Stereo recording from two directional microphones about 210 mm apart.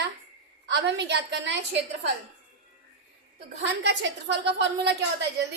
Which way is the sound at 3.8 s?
55° right (ahead or behind).